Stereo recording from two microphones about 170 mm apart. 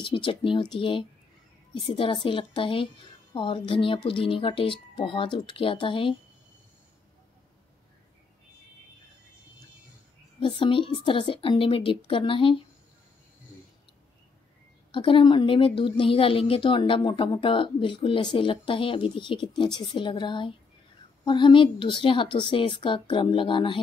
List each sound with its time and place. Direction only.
0.0 s speech: 30° left (ahead or behind)
10.6 s speech: 30° left (ahead or behind)
14.9 s a woman's voice: 30° left (ahead or behind)